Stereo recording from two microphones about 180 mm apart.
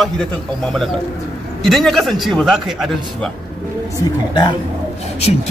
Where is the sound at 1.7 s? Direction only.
Centre (ahead or behind).